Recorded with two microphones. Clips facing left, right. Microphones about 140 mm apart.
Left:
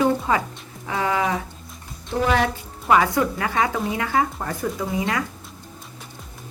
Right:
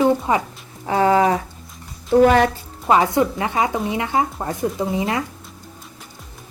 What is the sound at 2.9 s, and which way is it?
A woman's voice, 25° right (ahead or behind).